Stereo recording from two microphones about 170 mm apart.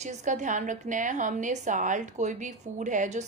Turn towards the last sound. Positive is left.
turn(degrees=-45)  # may be behind; listen again after turning